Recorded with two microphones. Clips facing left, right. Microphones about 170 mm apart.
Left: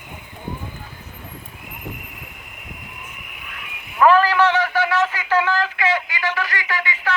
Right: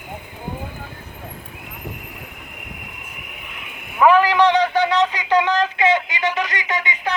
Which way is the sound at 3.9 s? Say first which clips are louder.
Right 1 dB; 15° right (ahead or behind).